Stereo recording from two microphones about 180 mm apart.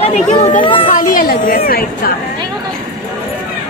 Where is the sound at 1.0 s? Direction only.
50° left (ahead or behind).